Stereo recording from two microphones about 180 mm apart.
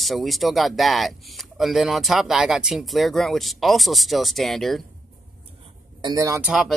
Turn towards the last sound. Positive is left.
turn(degrees=0)  # may be behind; listen again after turning